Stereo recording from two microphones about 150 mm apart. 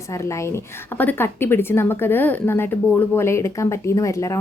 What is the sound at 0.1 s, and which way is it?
A woman's voice, 20° left (ahead or behind).